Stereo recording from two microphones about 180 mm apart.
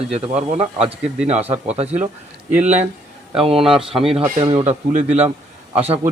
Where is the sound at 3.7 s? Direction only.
30° right (ahead or behind).